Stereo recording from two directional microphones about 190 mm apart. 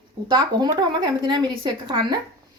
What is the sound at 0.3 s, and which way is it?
A woman's voice, 20° right (ahead or behind).